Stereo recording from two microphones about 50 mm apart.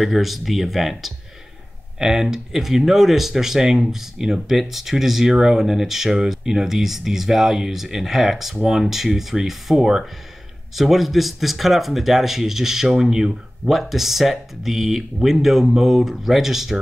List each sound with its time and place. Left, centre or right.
0.0 s speech: centre